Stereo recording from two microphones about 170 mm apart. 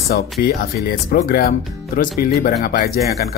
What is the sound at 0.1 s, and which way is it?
Speech, 65° left (ahead or behind).